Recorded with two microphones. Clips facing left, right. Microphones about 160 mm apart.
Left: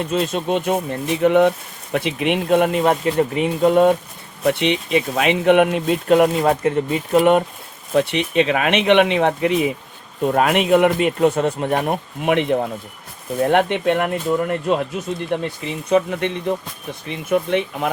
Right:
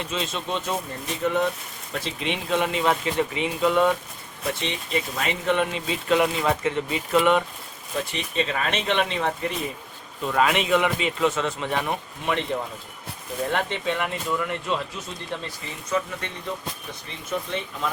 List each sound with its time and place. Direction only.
0.0 s speech: 50° left (ahead or behind)
4.7 s speech: 75° left (ahead or behind)
5.5 s speech: 60° left (ahead or behind)
7.9 s speech: 70° left (ahead or behind)
10.2 s speech: 55° left (ahead or behind)